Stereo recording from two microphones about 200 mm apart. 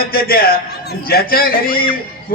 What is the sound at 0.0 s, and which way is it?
A man's voice, 50° left (ahead or behind).